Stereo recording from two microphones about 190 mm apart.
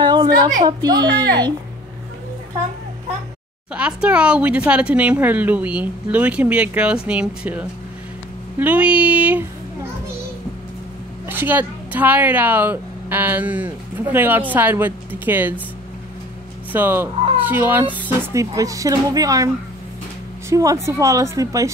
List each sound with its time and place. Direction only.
0.0 s a sound: 25° right (ahead or behind)
0.7 s speech: 20° right (ahead or behind)
3.7 s speech: 5° right (ahead or behind)
11.2 s speech: 10° right (ahead or behind)
16.7 s speech: 10° right (ahead or behind)